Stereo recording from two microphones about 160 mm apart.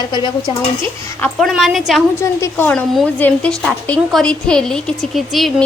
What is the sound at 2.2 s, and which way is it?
A woman's voice, 15° left (ahead or behind).